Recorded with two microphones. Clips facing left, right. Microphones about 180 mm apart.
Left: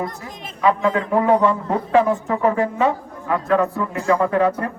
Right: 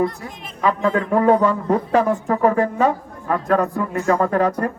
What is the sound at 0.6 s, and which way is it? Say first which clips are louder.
A man's voice: left 1 dB; 40° right (ahead or behind).